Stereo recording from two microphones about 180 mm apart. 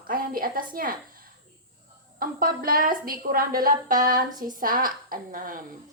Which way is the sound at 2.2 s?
55° right (ahead or behind).